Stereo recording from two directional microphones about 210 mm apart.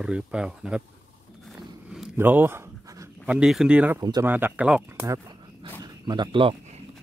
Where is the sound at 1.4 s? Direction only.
Centre (ahead or behind).